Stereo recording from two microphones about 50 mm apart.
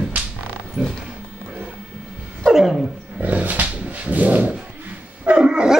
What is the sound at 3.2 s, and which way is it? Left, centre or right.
Dog, right.